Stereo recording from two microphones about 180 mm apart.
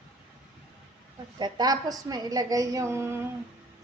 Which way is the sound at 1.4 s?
20° right (ahead or behind).